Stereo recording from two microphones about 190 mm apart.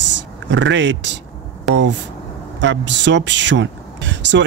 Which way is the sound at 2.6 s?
70° right (ahead or behind).